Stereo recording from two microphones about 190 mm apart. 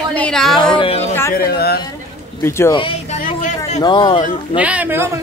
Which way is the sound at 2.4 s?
15° left (ahead or behind).